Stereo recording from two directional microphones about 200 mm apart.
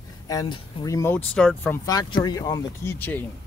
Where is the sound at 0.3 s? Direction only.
20° left (ahead or behind); by 1.8 s centre (ahead or behind).